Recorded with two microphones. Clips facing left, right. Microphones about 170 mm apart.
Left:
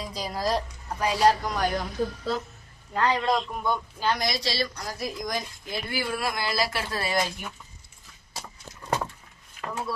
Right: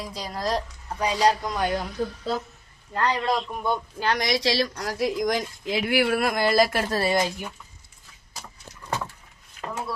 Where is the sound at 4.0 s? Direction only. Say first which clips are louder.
Right 4 dB; 80° right; by 7.0 s 50° right (ahead or behind).